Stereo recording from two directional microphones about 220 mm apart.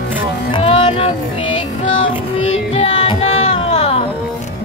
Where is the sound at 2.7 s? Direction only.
30° left (ahead or behind).